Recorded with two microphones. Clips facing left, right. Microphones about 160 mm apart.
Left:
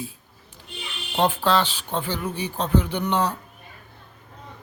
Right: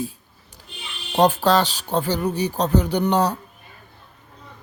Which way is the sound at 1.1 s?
40° right (ahead or behind).